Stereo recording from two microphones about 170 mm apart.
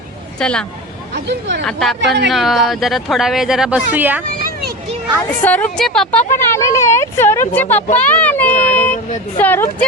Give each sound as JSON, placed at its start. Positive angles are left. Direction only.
{"t": 0.3, "sound": "speech", "side_deg": 5}
{"t": 1.1, "sound": "speech", "side_deg": -90}
{"t": 1.6, "sound": "speech", "side_deg": 0}
{"t": 5.4, "sound": "speech", "side_deg": 10}
{"t": 6.3, "sound": "speech", "side_deg": 15}
{"t": 7.9, "sound": "child singing", "side_deg": 10}
{"t": 9.4, "sound": "speech", "side_deg": 10}